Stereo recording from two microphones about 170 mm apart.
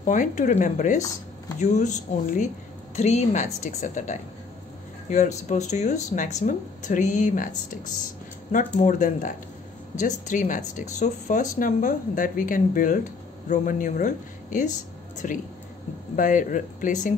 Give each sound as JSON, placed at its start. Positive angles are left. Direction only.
{"t": 0.0, "sound": "speech", "side_deg": 50}